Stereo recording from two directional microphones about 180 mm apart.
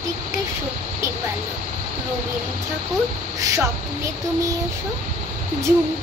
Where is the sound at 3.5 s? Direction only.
15° right (ahead or behind).